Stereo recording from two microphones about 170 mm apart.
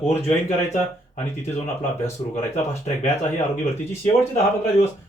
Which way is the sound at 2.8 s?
45° left (ahead or behind).